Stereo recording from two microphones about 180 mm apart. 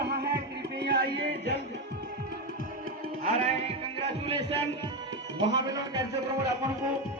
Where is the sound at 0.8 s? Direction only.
70° right (ahead or behind).